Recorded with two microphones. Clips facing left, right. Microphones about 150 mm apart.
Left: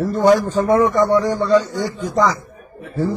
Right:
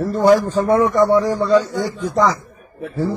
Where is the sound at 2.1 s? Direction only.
Centre (ahead or behind).